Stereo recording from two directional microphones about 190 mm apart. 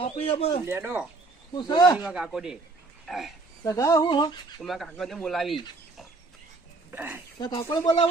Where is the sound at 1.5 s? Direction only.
20° left (ahead or behind).